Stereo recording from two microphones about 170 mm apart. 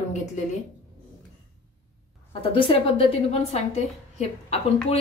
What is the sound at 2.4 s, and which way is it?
A woman's voice, 35° left (ahead or behind).